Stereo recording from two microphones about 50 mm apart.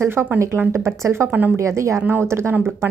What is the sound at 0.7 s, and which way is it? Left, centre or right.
Speech, right.